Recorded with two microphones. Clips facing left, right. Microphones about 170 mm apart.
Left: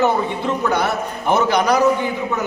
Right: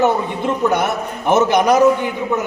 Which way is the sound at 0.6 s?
20° right (ahead or behind).